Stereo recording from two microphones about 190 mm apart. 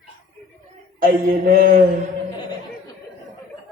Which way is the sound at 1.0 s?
45° right (ahead or behind).